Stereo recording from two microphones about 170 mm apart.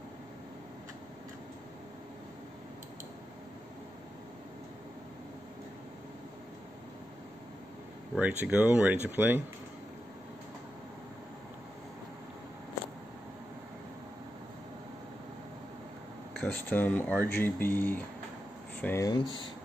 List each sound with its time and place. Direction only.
8.2 s speech: 10° right (ahead or behind)
16.3 s speech: 10° left (ahead or behind)
19.0 s speech: 25° left (ahead or behind)